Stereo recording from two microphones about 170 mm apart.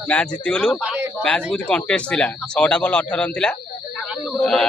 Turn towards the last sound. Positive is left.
turn(degrees=0)  # may be behind; listen again after turning